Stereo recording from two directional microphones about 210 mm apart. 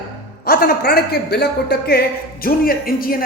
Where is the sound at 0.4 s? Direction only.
45° left (ahead or behind).